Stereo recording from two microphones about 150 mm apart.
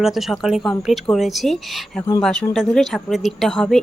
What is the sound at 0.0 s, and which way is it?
A woman's voice, centre (ahead or behind).